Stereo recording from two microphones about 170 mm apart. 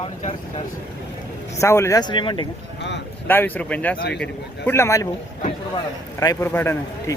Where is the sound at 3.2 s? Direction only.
10° left (ahead or behind).